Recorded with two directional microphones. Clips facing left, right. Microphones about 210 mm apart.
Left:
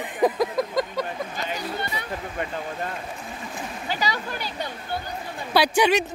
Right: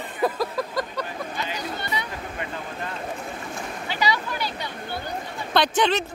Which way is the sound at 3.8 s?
45° left (ahead or behind).